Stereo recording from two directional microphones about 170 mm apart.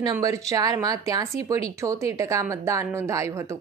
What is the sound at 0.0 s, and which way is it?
Speech, 20° right (ahead or behind).